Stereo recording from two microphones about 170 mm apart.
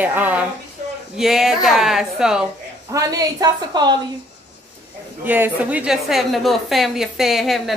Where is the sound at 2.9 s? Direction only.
20° right (ahead or behind).